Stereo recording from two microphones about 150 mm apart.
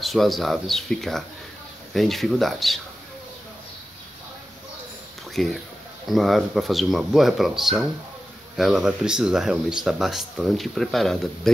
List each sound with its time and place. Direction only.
0.0 s speech: centre (ahead or behind)
5.3 s speech: centre (ahead or behind)